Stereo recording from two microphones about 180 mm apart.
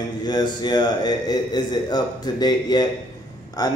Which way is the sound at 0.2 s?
25° left (ahead or behind).